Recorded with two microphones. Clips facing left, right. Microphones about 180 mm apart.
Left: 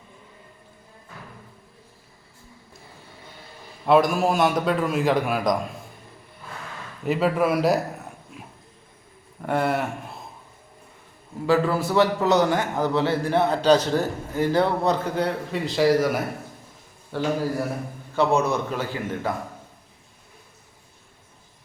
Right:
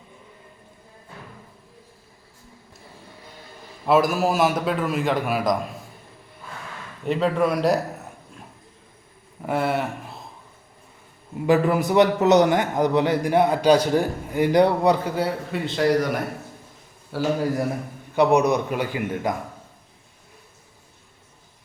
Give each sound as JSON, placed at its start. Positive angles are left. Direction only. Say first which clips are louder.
{"t": 3.8, "sound": "a man's voice", "louder": "left 1 dB", "side_deg": -5}
{"t": 7.0, "sound": "a man's voice", "louder": "even", "side_deg": 5}
{"t": 9.4, "sound": "speech", "louder": "even", "side_deg": 0}
{"t": 11.4, "sound": "a man's voice", "louder": "right 2 dB", "side_deg": -20}
{"t": 17.1, "sound": "a man's voice", "louder": "right 1 dB", "side_deg": -5}
{"t": 18.1, "sound": "a man's voice", "louder": "right 3 dB", "side_deg": -15}